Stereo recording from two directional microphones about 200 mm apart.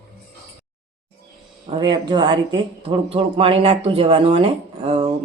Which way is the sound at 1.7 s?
25° right (ahead or behind).